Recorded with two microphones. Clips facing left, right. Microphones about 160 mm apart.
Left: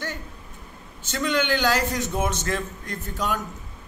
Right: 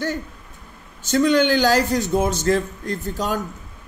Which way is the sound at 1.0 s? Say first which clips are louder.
Right 8 dB; 40° right (ahead or behind).